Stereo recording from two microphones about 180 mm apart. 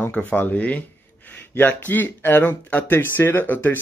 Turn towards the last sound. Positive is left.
turn(degrees=10)  # may be behind; listen again after turning